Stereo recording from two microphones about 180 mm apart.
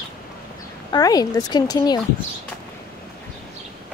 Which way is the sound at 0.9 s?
20° left (ahead or behind).